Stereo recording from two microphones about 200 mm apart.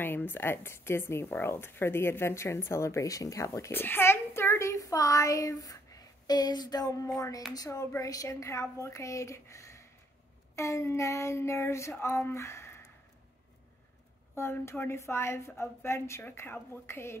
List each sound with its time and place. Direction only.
0.0 s speech: 10° left (ahead or behind)
14.3 s speech: 15° left (ahead or behind)